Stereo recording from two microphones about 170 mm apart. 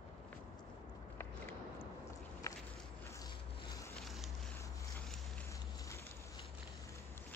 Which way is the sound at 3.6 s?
20° left (ahead or behind).